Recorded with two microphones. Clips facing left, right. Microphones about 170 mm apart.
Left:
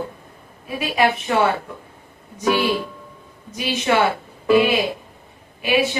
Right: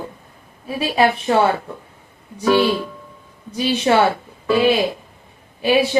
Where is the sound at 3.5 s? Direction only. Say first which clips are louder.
Right 6 dB; 30° right (ahead or behind).